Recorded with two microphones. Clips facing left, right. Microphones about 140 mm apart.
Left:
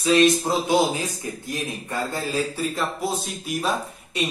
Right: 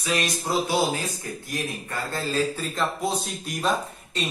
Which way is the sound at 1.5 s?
15° left (ahead or behind).